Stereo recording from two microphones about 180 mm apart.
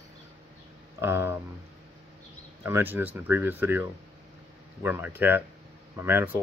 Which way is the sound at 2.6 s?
10° right (ahead or behind).